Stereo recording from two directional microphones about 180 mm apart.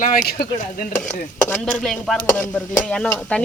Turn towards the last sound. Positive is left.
turn(degrees=5)  # may be behind; listen again after turning